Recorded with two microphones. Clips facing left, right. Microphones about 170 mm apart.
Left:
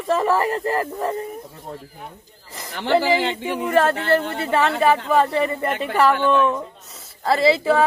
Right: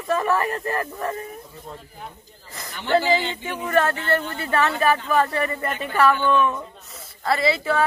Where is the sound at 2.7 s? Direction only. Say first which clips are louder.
Left 2 dB; 80° left.